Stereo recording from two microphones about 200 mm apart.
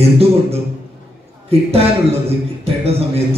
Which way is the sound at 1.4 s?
30° right (ahead or behind).